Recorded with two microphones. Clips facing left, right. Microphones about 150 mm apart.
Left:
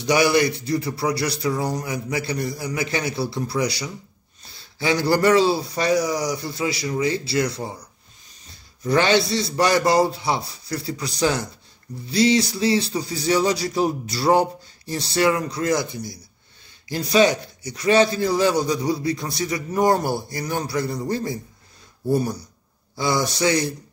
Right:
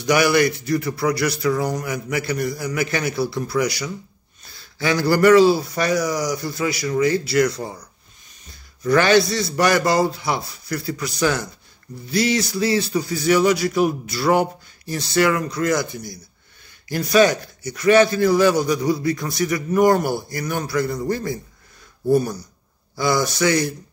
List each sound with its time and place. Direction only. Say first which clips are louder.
0.0 s speech: right 1 dB; 25° left (ahead or behind)
8.8 s a man's voice: right 3 dB; 25° left (ahead or behind)